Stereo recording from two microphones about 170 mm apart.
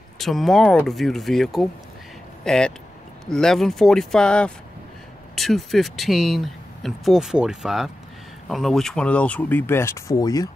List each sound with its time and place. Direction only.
0.2 s speech: centre (ahead or behind); by 10.5 s 20° left (ahead or behind)